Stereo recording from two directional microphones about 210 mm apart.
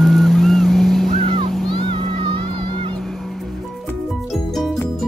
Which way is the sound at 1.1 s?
25° right (ahead or behind).